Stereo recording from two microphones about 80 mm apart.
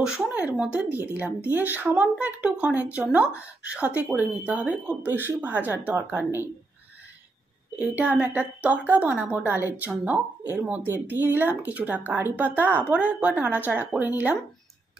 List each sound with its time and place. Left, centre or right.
0.4 s a woman's voice: centre
7.9 s speech: centre